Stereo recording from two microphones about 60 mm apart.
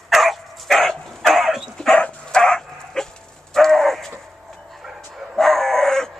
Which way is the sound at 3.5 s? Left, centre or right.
Centre.